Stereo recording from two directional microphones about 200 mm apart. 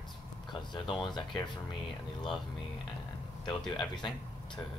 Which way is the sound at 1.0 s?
20° left (ahead or behind).